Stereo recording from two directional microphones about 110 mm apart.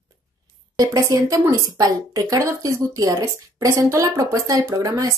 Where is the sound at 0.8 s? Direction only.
30° right (ahead or behind).